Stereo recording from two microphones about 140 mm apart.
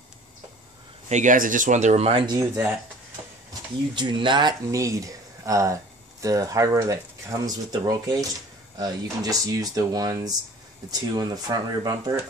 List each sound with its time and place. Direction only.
1.0 s speech: 60° right (ahead or behind)
2.2 s speech: 25° right (ahead or behind)
3.9 s speech: 35° right (ahead or behind)